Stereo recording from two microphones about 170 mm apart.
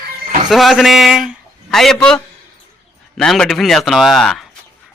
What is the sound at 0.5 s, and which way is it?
A man's voice, centre (ahead or behind).